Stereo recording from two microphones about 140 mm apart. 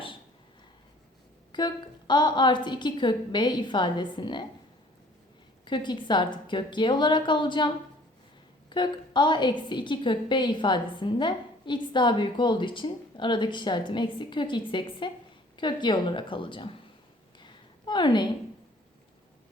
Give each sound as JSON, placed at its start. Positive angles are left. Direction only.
{"t": 1.5, "sound": "a woman's voice", "side_deg": 30}
{"t": 5.6, "sound": "a woman's voice", "side_deg": 35}
{"t": 17.4, "sound": "a sound", "side_deg": 35}